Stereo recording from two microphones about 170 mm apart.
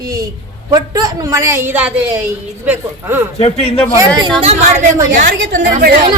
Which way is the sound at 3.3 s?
35° left (ahead or behind).